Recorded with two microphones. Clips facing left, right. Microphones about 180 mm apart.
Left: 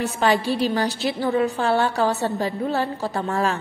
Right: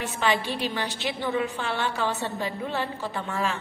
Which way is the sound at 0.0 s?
40° left (ahead or behind).